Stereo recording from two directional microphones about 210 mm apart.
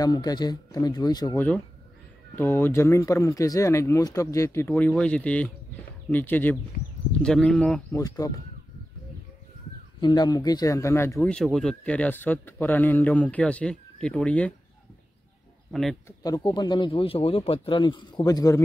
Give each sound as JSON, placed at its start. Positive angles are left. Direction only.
{"t": 0.0, "sound": "speech", "side_deg": 20}
{"t": 8.2, "sound": "speech", "side_deg": 15}
{"t": 9.9, "sound": "speech", "side_deg": 20}
{"t": 15.7, "sound": "speech", "side_deg": 0}
{"t": 16.1, "sound": "speech", "side_deg": 15}